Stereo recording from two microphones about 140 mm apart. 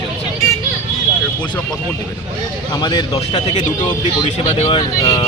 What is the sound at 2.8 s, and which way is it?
Speech, 30° left (ahead or behind).